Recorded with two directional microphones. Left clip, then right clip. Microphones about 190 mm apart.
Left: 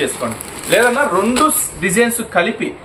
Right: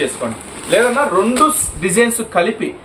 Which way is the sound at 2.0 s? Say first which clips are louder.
Right 1 dB; 20° right (ahead or behind).